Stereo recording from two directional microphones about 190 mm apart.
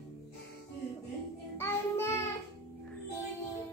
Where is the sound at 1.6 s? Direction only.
15° left (ahead or behind).